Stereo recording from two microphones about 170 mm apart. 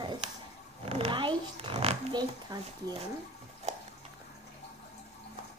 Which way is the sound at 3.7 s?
40° right (ahead or behind).